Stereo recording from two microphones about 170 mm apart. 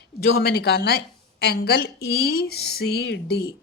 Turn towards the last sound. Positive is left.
turn(degrees=75)  # may be behind; listen again after turning